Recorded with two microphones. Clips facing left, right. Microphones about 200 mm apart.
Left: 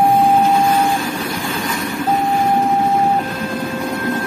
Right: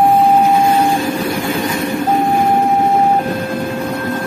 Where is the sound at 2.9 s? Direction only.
40° right (ahead or behind).